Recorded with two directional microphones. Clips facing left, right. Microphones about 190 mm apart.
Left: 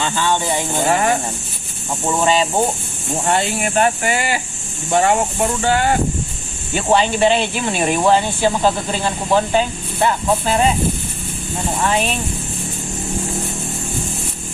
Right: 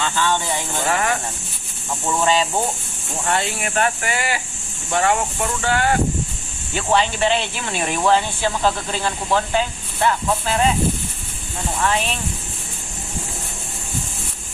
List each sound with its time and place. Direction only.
0.0 s speech: 20° left (ahead or behind)
6.7 s speech: 15° left (ahead or behind)
11.8 s speech: 20° left (ahead or behind)